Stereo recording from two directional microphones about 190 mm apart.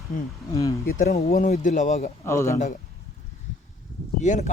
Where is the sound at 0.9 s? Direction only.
50° left (ahead or behind).